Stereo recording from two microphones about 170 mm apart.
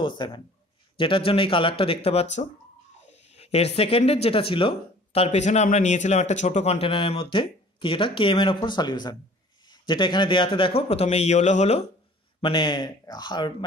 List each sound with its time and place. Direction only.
0.0 s speech: 25° left (ahead or behind)
2.4 s speech: 45° left (ahead or behind)
12.4 s speech: 30° left (ahead or behind)